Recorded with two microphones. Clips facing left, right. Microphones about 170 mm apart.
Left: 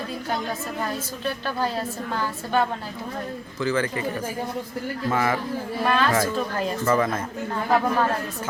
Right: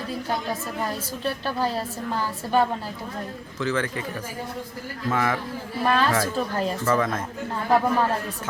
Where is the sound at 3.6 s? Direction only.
Centre (ahead or behind).